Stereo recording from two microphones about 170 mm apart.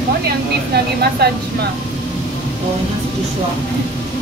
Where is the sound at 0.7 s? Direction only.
70° right (ahead or behind).